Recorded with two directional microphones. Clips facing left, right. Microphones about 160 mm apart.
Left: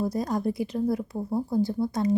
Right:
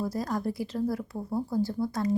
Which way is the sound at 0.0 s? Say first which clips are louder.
Left 3 dB; 20° left (ahead or behind).